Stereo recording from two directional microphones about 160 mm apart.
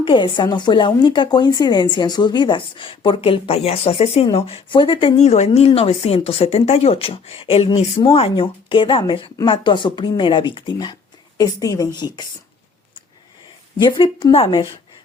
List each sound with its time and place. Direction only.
0.0 s a woman's voice: 30° left (ahead or behind)
13.7 s a woman's voice: 30° left (ahead or behind)